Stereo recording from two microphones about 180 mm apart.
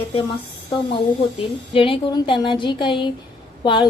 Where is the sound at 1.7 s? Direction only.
30° left (ahead or behind).